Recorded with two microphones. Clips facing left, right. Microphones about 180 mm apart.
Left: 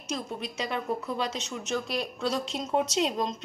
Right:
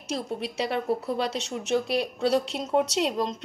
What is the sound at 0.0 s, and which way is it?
A woman's voice, 70° right (ahead or behind).